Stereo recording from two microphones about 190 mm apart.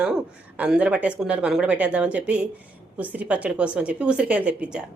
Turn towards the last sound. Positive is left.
turn(degrees=-5)  # may be behind; listen again after turning